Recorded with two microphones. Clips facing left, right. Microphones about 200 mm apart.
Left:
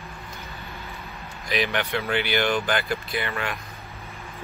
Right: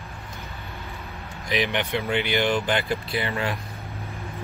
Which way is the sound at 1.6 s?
20° right (ahead or behind).